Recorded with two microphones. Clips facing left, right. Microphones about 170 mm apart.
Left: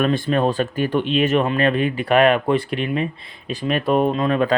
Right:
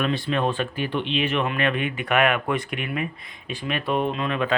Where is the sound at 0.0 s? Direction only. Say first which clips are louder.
Left 5 dB; 45° left (ahead or behind).